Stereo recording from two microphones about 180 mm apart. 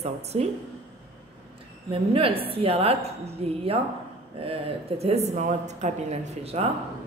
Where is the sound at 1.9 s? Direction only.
30° right (ahead or behind).